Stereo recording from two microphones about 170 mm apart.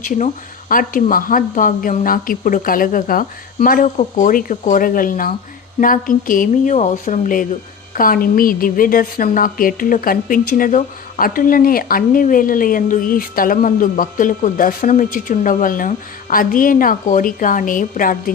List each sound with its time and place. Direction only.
0.7 s a woman's voice: 55° left (ahead or behind)